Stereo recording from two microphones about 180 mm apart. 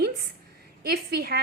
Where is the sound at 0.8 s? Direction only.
60° right (ahead or behind).